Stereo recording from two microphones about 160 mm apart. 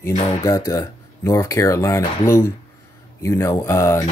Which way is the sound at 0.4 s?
20° left (ahead or behind).